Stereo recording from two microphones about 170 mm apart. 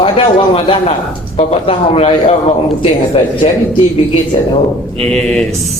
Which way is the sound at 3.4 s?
30° left (ahead or behind).